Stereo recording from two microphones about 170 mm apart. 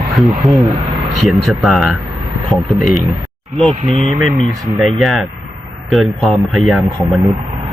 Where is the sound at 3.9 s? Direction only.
35° right (ahead or behind).